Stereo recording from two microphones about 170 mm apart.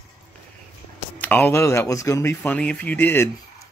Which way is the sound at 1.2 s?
10° left (ahead or behind).